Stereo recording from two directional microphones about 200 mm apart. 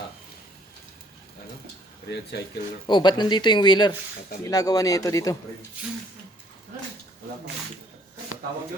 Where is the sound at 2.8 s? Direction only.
20° left (ahead or behind).